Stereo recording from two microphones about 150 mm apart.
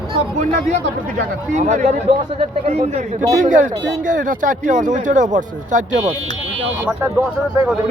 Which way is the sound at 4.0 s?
60° right (ahead or behind).